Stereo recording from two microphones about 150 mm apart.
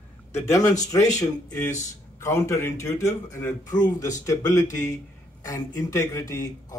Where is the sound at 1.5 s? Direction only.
15° left (ahead or behind).